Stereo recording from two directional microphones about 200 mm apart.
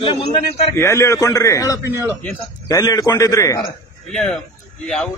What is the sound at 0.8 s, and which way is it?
A man's voice, 15° left (ahead or behind).